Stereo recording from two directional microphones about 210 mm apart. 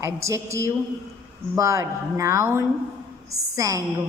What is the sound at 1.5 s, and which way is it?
A woman's voice, 15° right (ahead or behind).